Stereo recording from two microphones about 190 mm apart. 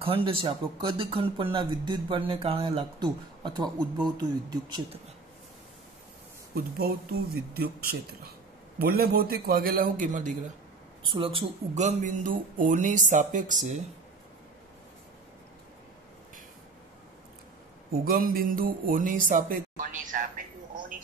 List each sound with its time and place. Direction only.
0.0 s speech: 30° right (ahead or behind)
6.5 s speech: 50° right (ahead or behind)
11.1 s speech: 30° right (ahead or behind)
18.0 s speech: 50° right (ahead or behind)